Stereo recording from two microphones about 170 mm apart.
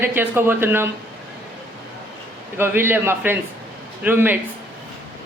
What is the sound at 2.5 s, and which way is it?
Speech, 15° right (ahead or behind).